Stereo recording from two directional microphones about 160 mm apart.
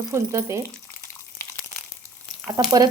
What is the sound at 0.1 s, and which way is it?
Speech, 15° right (ahead or behind).